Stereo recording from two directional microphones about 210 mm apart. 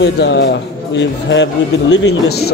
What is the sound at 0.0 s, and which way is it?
A man's voice, 55° left (ahead or behind).